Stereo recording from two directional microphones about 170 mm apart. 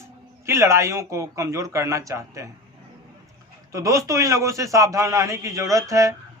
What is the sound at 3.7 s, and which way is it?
A man's voice, 20° right (ahead or behind).